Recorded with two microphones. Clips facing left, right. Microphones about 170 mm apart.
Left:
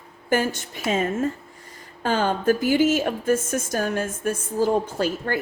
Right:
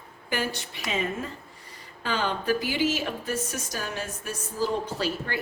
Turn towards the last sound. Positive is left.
turn(degrees=50)  # may be behind; listen again after turning